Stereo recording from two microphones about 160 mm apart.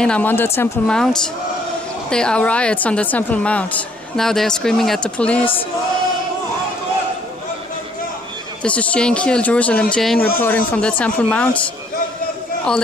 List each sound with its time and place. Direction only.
0.0 s speech: 10° left (ahead or behind)
8.6 s speech: 5° left (ahead or behind)
10.1 s speech: 70° left (ahead or behind)
10.4 s speech: 10° left (ahead or behind)